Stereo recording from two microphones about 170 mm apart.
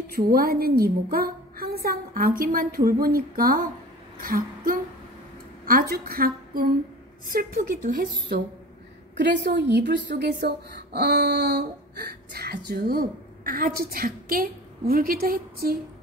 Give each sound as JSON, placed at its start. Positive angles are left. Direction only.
{"t": 0.1, "sound": "a woman's voice", "side_deg": -60}
{"t": 4.2, "sound": "a sound", "side_deg": -55}
{"t": 5.7, "sound": "a woman's voice", "side_deg": -60}
{"t": 9.1, "sound": "a woman's voice", "side_deg": -90}